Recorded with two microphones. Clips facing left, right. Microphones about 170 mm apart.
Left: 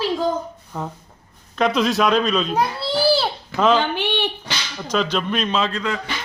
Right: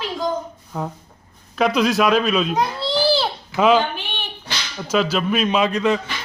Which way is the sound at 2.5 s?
10° left (ahead or behind).